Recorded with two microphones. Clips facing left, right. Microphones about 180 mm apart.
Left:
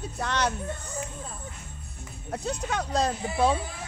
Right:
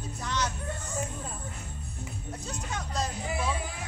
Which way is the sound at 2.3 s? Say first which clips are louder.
Left 9 dB; 70° left (ahead or behind).